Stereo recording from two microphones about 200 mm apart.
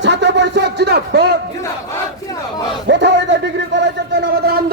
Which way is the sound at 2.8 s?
60° right (ahead or behind).